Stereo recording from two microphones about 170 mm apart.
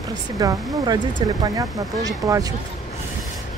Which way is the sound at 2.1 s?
20° right (ahead or behind).